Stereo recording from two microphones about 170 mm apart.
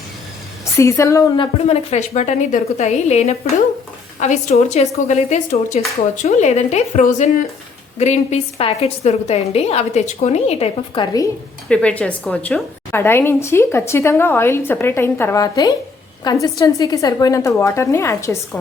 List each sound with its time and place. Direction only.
0.6 s a woman's voice: 15° left (ahead or behind)
1.4 s a woman's voice: 35° left (ahead or behind)
11.7 s a woman's voice: 5° left (ahead or behind)